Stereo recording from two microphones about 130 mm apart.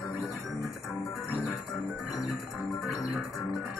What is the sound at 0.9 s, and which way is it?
Music, centre (ahead or behind).